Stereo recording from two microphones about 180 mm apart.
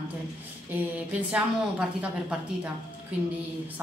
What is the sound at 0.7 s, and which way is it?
A woman's voice, 5° right (ahead or behind).